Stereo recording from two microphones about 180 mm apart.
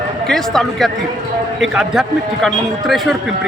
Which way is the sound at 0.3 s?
Centre (ahead or behind).